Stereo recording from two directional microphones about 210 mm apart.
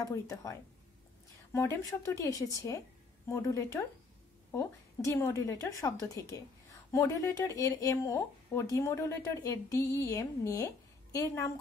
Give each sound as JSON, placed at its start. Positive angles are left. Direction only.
{"t": 0.0, "sound": "speech", "side_deg": 15}